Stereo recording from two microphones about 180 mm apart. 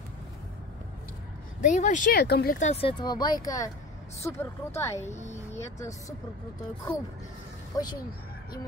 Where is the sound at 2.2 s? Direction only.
65° left (ahead or behind).